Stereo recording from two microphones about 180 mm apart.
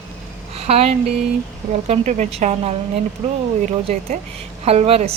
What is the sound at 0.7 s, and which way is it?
A woman's voice, 35° right (ahead or behind).